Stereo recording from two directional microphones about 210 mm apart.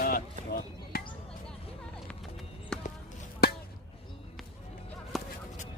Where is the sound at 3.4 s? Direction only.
50° left (ahead or behind).